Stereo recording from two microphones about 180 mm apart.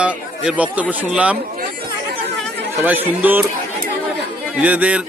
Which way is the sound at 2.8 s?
10° right (ahead or behind).